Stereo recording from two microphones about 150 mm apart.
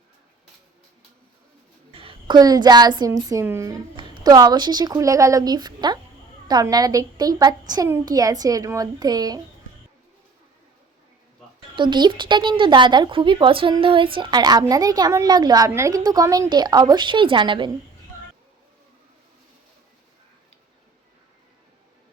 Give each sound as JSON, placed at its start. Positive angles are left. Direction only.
{"t": 1.9, "sound": "a woman's voice", "side_deg": -40}
{"t": 3.9, "sound": "a woman's voice", "side_deg": -30}
{"t": 11.8, "sound": "a woman's voice", "side_deg": -30}